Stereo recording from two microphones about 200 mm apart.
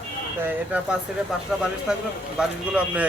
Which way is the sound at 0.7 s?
10° right (ahead or behind).